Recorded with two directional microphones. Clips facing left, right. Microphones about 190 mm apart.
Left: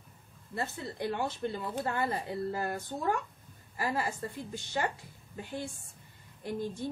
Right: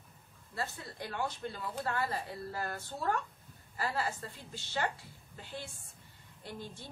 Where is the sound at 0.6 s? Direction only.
20° left (ahead or behind).